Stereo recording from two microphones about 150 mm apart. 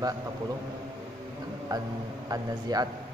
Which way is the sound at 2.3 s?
25° right (ahead or behind).